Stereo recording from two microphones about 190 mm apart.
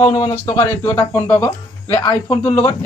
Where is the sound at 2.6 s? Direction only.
30° left (ahead or behind).